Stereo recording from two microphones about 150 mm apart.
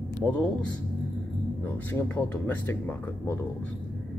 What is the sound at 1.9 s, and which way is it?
Speech, 15° left (ahead or behind).